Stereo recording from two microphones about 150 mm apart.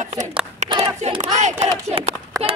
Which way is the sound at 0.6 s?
50° right (ahead or behind).